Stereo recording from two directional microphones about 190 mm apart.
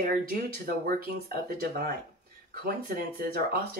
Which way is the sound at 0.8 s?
50° right (ahead or behind).